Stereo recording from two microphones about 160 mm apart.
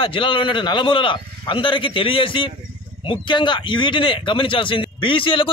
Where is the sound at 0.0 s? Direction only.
30° left (ahead or behind).